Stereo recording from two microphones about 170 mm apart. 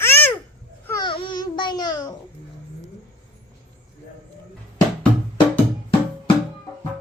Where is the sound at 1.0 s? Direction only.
30° left (ahead or behind).